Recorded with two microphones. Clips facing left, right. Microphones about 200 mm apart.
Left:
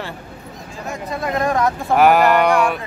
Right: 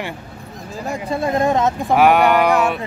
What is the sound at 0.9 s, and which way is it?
Speech, 30° right (ahead or behind).